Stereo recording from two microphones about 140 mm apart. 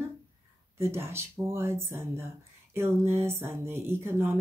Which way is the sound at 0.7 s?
20° right (ahead or behind).